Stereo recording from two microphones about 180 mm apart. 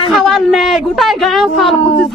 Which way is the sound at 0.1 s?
Centre (ahead or behind).